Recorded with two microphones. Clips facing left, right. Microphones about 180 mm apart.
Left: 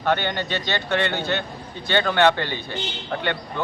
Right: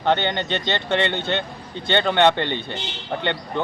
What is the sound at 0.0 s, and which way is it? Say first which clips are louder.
Speech: right 2 dB; 20° right (ahead or behind).